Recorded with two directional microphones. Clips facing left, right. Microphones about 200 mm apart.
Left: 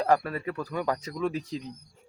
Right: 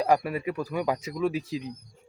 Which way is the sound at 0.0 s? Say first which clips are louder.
Right 1 dB; 15° right (ahead or behind).